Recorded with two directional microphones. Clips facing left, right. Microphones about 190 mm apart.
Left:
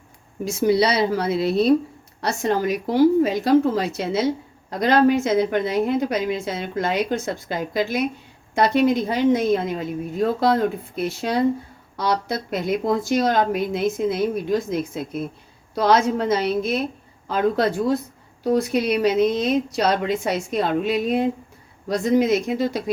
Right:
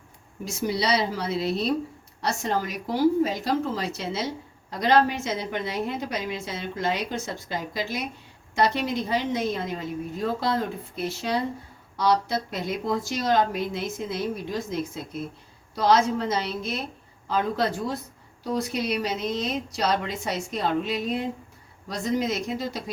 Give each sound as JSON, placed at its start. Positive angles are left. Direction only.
{"t": 0.4, "sound": "a woman's voice", "side_deg": 55}